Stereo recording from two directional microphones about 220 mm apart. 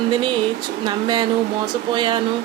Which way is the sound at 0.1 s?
20° right (ahead or behind).